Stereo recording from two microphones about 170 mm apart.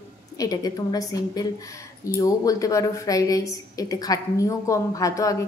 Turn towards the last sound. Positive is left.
turn(degrees=20)  # may be behind; listen again after turning